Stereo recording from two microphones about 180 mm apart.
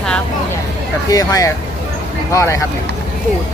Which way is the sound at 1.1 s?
20° left (ahead or behind).